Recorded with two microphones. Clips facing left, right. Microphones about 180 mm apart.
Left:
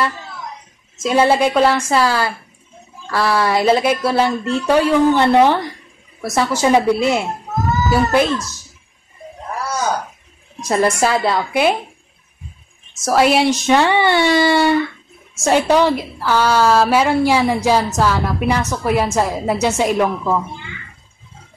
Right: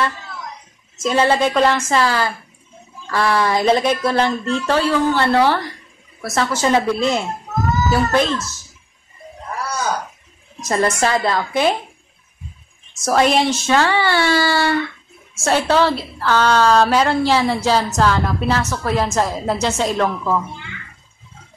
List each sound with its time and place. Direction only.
1.0 s a woman's voice: 10° left (ahead or behind)
10.6 s a woman's voice: 5° left (ahead or behind)
13.0 s a woman's voice: 5° left (ahead or behind)